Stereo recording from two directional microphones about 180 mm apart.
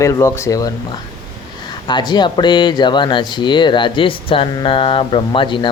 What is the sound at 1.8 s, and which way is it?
Speech, 25° left (ahead or behind).